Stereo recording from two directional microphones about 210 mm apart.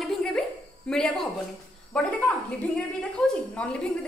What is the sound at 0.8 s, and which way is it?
A woman's voice, 5° left (ahead or behind).